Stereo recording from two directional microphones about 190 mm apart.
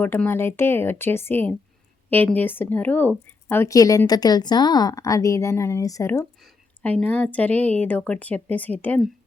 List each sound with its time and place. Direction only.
0.0 s a woman's voice: 10° left (ahead or behind)